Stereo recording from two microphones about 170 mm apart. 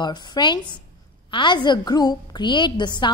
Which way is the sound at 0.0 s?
25° left (ahead or behind).